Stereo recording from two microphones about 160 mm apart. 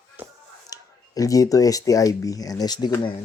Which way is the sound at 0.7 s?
20° left (ahead or behind).